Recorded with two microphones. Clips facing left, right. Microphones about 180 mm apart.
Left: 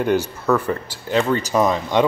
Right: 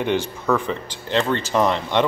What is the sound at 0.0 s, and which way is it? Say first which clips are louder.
Speech: left 3 dB; 5° left (ahead or behind).